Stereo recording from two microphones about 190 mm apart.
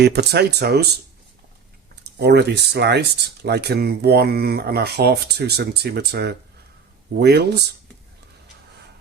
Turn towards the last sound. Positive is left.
turn(degrees=-60)  # may be behind; listen again after turning